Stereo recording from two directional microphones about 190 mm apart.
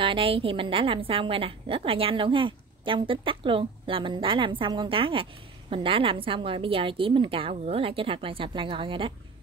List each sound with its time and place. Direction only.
0.0 s a woman's voice: 25° right (ahead or behind)